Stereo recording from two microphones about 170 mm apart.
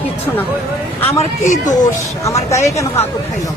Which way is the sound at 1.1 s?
40° left (ahead or behind).